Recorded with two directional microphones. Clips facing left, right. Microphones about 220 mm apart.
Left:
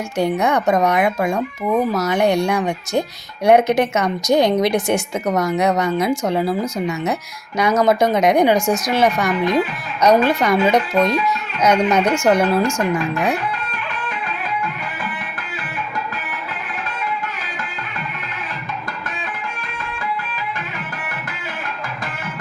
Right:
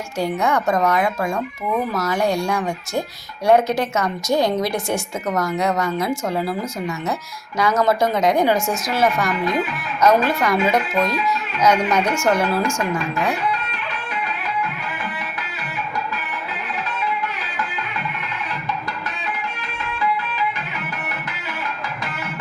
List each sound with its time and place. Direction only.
0.2 s a woman's voice: 20° left (ahead or behind)